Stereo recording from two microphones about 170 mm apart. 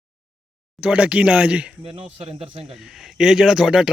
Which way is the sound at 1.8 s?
35° right (ahead or behind).